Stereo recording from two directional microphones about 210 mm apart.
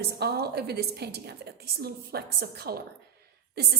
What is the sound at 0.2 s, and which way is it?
A woman's voice, 50° right (ahead or behind).